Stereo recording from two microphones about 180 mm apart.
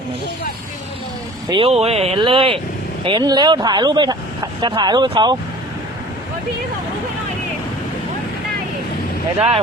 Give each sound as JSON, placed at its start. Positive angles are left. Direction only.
{"t": 1.5, "sound": "speech", "side_deg": -30}